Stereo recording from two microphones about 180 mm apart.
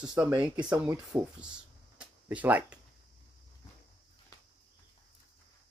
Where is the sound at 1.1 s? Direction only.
20° right (ahead or behind).